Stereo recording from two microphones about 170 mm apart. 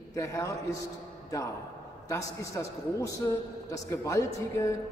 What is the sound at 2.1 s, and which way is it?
A man's voice, 20° left (ahead or behind).